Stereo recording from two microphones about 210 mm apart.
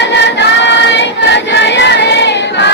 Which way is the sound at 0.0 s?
55° left (ahead or behind).